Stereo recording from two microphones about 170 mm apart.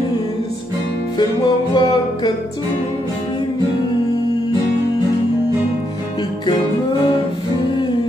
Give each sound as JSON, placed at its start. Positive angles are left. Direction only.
{"t": 1.8, "sound": "music", "side_deg": 25}